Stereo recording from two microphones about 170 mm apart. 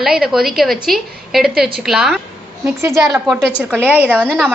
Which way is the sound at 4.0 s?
10° right (ahead or behind).